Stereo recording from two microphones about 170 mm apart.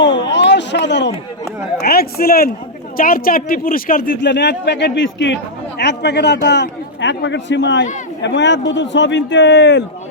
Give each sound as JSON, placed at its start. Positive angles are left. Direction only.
{"t": 0.0, "sound": "a sound", "side_deg": 90}
{"t": 1.8, "sound": "speech", "side_deg": 65}
{"t": 4.2, "sound": "a man's voice", "side_deg": 90}